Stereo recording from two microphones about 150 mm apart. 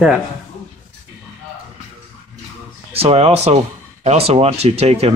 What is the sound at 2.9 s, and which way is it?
Speech, 40° right (ahead or behind).